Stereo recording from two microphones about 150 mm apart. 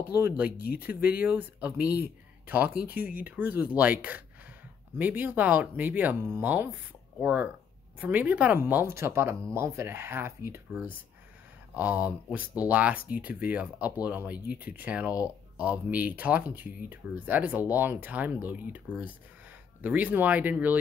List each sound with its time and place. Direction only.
0.7 s speech: 10° right (ahead or behind)
4.9 s speech: 10° right (ahead or behind)